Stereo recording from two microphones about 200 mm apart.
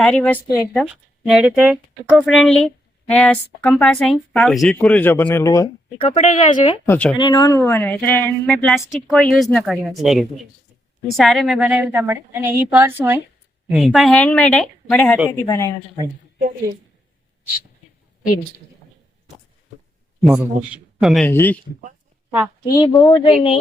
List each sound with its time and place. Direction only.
0.0 s speech: 5° left (ahead or behind)
6.0 s speech: 35° left (ahead or behind)
6.8 s speech: 10° left (ahead or behind)
7.2 s a woman's voice: 20° left (ahead or behind); by 15.2 s 5° left (ahead or behind)
15.3 s speech: 15° left (ahead or behind)
20.2 s speech: 5° right (ahead or behind)
21.2 s speech: 10° left (ahead or behind)
22.6 s speech: 15° left (ahead or behind)